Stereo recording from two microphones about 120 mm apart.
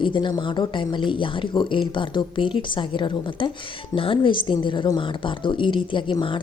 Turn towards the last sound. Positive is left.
turn(degrees=40)  # may be behind; listen again after turning